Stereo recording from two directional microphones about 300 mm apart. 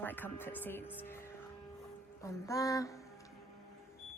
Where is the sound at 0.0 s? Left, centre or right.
Centre.